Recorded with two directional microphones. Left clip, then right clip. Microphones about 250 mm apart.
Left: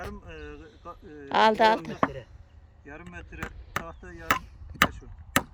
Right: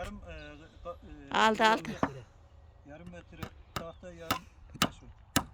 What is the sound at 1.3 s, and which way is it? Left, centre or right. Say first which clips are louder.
Speech: left 5 dB; centre.